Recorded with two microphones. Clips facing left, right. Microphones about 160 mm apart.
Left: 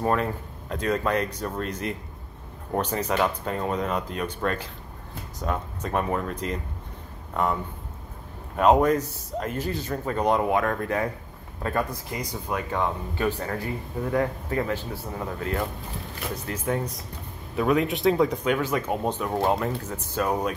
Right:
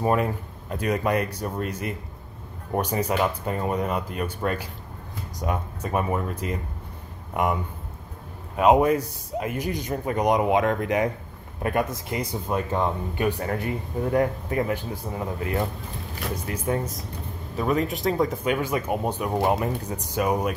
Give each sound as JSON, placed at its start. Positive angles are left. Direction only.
{"t": 0.0, "sound": "speech", "side_deg": -10}
{"t": 8.5, "sound": "speech", "side_deg": -10}
{"t": 17.6, "sound": "speech", "side_deg": 0}